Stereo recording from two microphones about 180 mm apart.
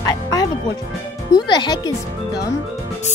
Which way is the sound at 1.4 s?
25° left (ahead or behind).